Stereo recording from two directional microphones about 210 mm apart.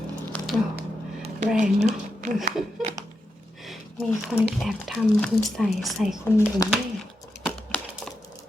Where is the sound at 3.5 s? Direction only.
Centre (ahead or behind).